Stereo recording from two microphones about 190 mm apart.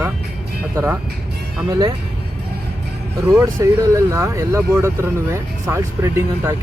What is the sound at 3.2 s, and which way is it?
Speech, 15° right (ahead or behind).